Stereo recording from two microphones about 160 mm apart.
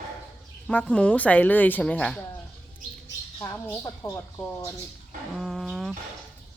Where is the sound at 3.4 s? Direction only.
15° left (ahead or behind).